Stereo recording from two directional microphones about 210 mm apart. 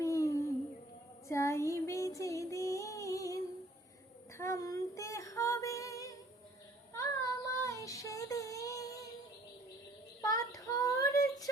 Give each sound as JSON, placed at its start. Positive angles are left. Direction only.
{"t": 0.0, "sound": "humming", "side_deg": 15}
{"t": 1.3, "sound": "music", "side_deg": 15}
{"t": 4.4, "sound": "female singing", "side_deg": 15}
{"t": 6.9, "sound": "child singing", "side_deg": 15}
{"t": 10.2, "sound": "child singing", "side_deg": 15}